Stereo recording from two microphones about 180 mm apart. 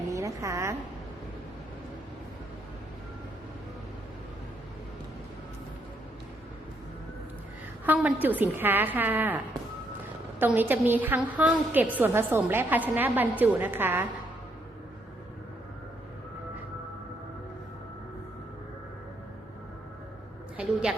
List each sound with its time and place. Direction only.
0.1 s a sound: 15° right (ahead or behind)
7.9 s a woman's voice: 10° right (ahead or behind)
10.4 s a woman's voice: 10° right (ahead or behind)